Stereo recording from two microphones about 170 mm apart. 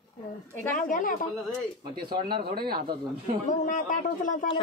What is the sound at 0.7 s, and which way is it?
Speech, 50° left (ahead or behind).